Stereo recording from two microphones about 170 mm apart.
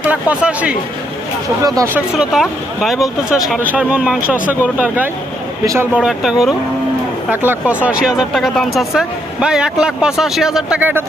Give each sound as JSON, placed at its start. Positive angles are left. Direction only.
{"t": 0.0, "sound": "speech", "side_deg": -10}
{"t": 1.6, "sound": "speech", "side_deg": -20}
{"t": 2.1, "sound": "speech", "side_deg": 0}